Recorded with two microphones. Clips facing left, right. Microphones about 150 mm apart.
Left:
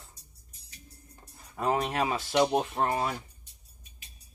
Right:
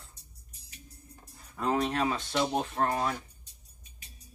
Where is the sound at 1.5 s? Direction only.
10° left (ahead or behind).